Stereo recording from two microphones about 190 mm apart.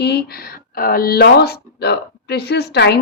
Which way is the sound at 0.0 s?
60° left (ahead or behind).